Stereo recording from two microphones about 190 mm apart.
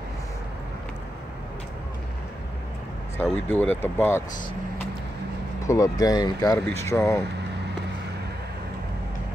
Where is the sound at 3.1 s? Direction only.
10° left (ahead or behind).